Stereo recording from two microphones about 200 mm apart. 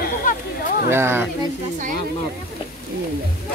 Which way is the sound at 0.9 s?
10° right (ahead or behind).